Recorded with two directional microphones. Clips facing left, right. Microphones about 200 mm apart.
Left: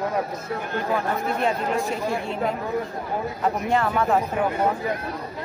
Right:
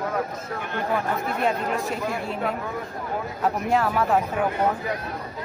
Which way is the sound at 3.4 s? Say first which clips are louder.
Right 1 dB; 5° right (ahead or behind).